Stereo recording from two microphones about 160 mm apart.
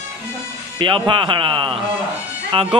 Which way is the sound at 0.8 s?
30° right (ahead or behind).